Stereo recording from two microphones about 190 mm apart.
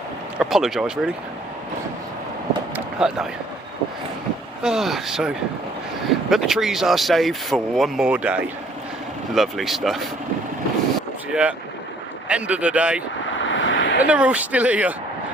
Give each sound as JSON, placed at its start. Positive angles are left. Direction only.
{"t": 0.3, "sound": "speech", "side_deg": 0}
{"t": 2.7, "sound": "a sound", "side_deg": -5}
{"t": 4.6, "sound": "speech", "side_deg": 0}
{"t": 11.3, "sound": "speech", "side_deg": -5}
{"t": 13.4, "sound": "a sound", "side_deg": 80}
{"t": 14.1, "sound": "speech", "side_deg": -5}